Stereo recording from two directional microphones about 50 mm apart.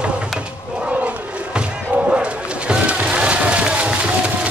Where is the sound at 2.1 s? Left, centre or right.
Right.